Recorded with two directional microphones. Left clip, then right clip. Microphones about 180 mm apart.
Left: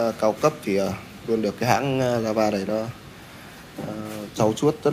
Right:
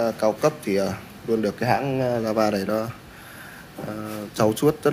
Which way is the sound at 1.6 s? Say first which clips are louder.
Left 1 dB; 10° left (ahead or behind).